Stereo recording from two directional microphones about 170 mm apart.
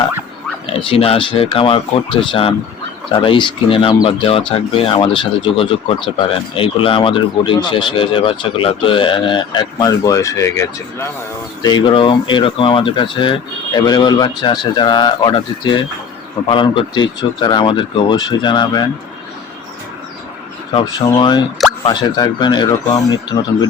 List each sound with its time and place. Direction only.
0.7 s speech: 30° left (ahead or behind); by 11.1 s 15° left (ahead or behind)
11.6 s speech: 25° left (ahead or behind)
21.2 s speech: 25° left (ahead or behind)